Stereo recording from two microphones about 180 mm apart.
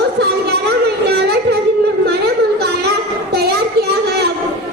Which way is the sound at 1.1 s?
65° right (ahead or behind).